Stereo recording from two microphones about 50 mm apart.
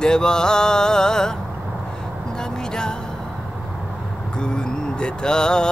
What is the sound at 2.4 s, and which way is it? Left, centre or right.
Vehicle, centre.